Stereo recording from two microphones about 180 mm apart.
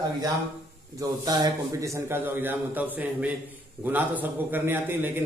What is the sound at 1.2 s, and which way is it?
A man's voice, 20° right (ahead or behind).